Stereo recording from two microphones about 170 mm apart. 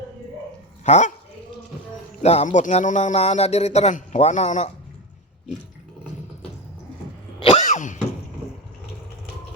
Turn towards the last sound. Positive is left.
turn(degrees=45)  # may be behind; listen again after turning